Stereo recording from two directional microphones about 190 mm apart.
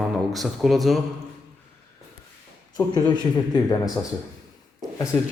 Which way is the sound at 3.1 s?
20° left (ahead or behind).